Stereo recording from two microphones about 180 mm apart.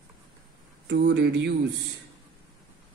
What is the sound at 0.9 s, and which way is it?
Speech, 70° right (ahead or behind).